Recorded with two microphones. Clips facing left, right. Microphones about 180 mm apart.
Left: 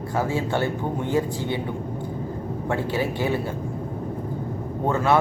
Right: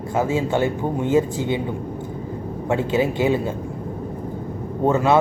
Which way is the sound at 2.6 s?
20° right (ahead or behind).